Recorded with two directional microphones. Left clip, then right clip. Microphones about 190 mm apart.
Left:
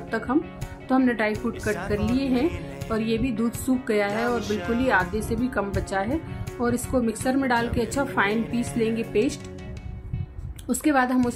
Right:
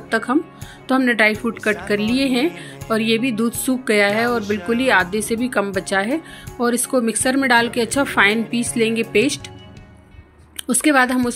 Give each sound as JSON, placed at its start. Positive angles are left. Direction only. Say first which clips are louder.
{"t": 0.1, "sound": "speech", "louder": "right 6 dB", "side_deg": -15}
{"t": 4.4, "sound": "speech", "louder": "right 6 dB", "side_deg": 0}
{"t": 4.7, "sound": "speech", "louder": "right 6 dB", "side_deg": -15}
{"t": 10.7, "sound": "speech", "louder": "right 6 dB", "side_deg": -15}